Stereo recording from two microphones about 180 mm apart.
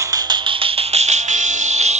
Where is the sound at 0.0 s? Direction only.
20° right (ahead or behind).